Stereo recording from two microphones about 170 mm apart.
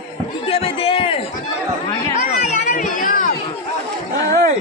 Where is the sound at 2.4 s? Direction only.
45° left (ahead or behind).